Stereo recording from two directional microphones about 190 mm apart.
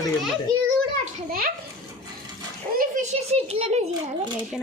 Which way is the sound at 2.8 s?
35° right (ahead or behind).